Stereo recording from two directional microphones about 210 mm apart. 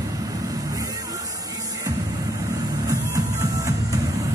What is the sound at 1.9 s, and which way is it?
Music, 15° right (ahead or behind).